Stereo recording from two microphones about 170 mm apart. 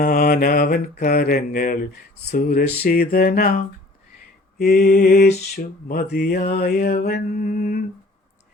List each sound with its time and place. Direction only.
0.0 s mantra: 55° left (ahead or behind)